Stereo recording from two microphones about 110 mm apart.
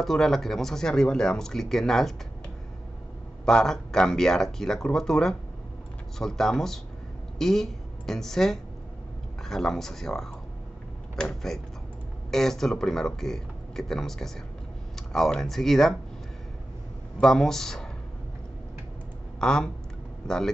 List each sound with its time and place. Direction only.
0.0 s speech: centre (ahead or behind)
3.4 s speech: 5° left (ahead or behind)
17.2 s speech: 5° left (ahead or behind)
19.4 s speech: 5° left (ahead or behind)